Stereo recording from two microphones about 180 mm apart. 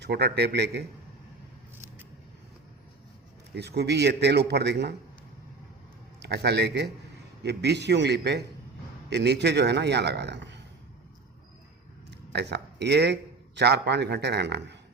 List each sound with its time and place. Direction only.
0.0 s a man's voice: 65° right (ahead or behind)
3.5 s a man's voice: 65° right (ahead or behind)
6.2 s a man's voice: 65° right (ahead or behind)
12.3 s a man's voice: 70° right (ahead or behind)